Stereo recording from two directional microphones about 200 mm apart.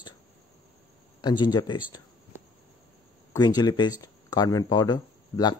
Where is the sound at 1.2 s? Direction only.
20° left (ahead or behind).